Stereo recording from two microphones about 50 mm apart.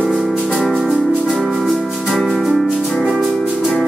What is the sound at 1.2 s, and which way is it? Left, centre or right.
Maraca, centre.